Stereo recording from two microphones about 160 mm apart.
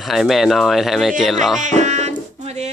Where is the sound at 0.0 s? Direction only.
Centre (ahead or behind).